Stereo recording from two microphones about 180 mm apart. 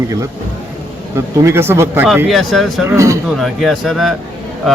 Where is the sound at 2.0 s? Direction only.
Centre (ahead or behind).